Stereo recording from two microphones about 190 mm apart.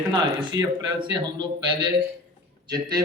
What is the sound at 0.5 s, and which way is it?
A man's voice, 20° right (ahead or behind).